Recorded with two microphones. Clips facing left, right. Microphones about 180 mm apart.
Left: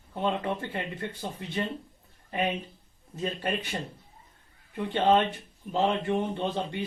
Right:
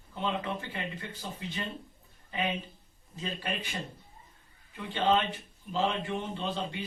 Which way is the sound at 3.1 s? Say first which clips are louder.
Left 5 dB; 50° left (ahead or behind).